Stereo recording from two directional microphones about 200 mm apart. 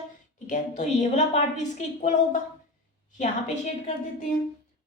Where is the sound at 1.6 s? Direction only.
35° left (ahead or behind).